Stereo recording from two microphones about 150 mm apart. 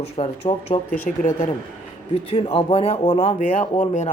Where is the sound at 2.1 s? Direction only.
40° left (ahead or behind).